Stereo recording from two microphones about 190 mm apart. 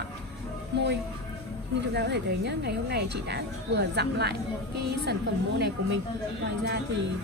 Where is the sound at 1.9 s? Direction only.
60° right (ahead or behind).